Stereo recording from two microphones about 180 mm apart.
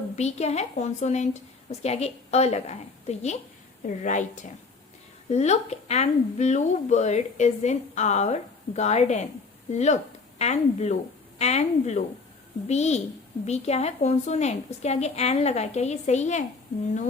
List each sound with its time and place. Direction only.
0.2 s a woman's voice: 35° left (ahead or behind)
5.3 s a woman's voice: 40° left (ahead or behind)